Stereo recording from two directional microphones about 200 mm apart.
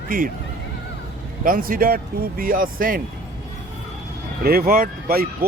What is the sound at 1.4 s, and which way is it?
Speech, 45° right (ahead or behind).